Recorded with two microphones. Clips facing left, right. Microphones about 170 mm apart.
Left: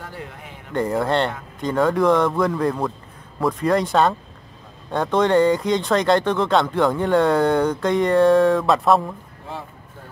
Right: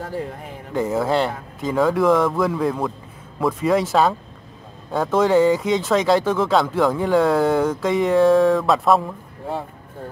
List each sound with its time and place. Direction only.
0.0 s speech: 35° right (ahead or behind)
0.7 s speech: centre (ahead or behind)